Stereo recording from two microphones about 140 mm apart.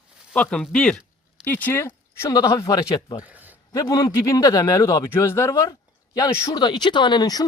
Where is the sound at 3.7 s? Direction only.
25° left (ahead or behind).